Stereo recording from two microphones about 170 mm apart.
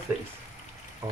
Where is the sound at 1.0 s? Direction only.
20° right (ahead or behind).